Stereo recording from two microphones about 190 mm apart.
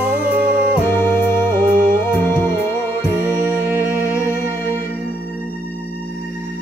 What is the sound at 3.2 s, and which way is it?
Music, 10° right (ahead or behind).